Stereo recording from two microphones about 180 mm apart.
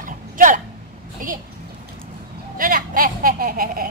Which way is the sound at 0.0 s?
45° right (ahead or behind).